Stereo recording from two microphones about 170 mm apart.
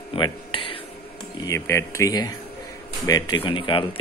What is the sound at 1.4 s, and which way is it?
Dishes, 15° left (ahead or behind).